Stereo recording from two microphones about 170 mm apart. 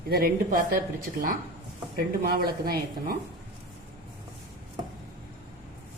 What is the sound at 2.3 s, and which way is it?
Speech, 65° right (ahead or behind).